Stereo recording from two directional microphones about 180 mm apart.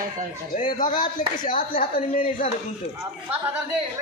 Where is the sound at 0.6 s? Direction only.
45° left (ahead or behind).